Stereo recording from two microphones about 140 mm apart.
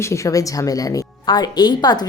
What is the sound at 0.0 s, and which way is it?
A woman's voice, 20° left (ahead or behind).